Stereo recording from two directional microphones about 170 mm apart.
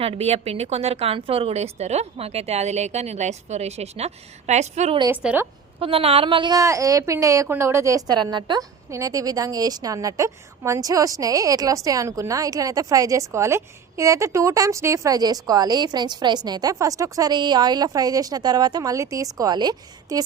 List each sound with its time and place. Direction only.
0.0 s a woman's voice: 35° right (ahead or behind)
5.1 s a woman's voice: 10° right (ahead or behind)
5.8 s a woman's voice: 35° right (ahead or behind)